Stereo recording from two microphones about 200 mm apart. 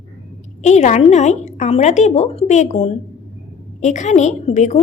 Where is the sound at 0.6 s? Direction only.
35° left (ahead or behind).